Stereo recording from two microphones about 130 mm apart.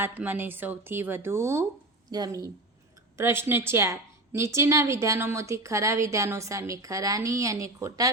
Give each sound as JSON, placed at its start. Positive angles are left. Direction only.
{"t": 0.0, "sound": "a woman's voice", "side_deg": -15}
{"t": 3.2, "sound": "a woman's voice", "side_deg": -20}